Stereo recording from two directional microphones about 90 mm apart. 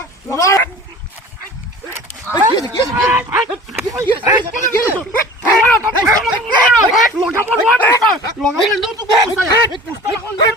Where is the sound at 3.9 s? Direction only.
45° right (ahead or behind).